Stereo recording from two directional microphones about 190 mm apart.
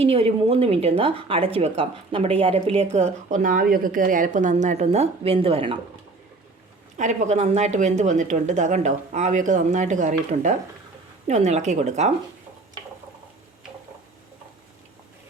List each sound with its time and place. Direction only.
0.0 s a woman's voice: 30° right (ahead or behind)
6.9 s a woman's voice: 40° right (ahead or behind)